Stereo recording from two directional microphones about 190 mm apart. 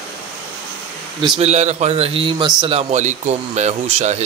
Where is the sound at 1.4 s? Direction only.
35° right (ahead or behind).